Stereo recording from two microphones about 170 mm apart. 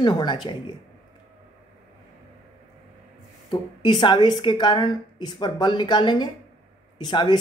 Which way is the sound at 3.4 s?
25° left (ahead or behind).